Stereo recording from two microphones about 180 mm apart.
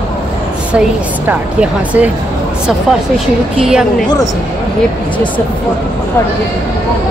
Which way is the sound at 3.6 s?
5° right (ahead or behind).